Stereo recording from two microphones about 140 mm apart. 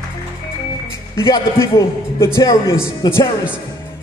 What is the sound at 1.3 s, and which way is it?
A man's voice, 20° left (ahead or behind).